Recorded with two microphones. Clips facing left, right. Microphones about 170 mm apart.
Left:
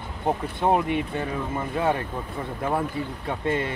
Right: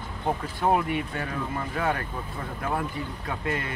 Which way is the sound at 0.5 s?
25° left (ahead or behind).